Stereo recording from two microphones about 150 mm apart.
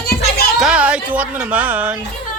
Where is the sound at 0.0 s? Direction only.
90° left.